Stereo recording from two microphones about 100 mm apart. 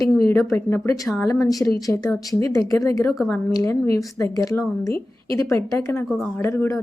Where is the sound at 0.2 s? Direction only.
30° left (ahead or behind).